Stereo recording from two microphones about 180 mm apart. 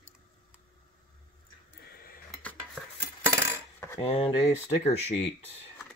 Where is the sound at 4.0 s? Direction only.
30° left (ahead or behind).